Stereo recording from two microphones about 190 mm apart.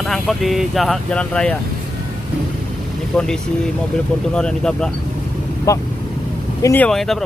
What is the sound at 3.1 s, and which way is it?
Speech, 5° left (ahead or behind).